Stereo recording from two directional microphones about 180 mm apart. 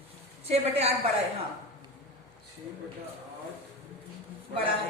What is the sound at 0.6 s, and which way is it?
Speech, 35° right (ahead or behind).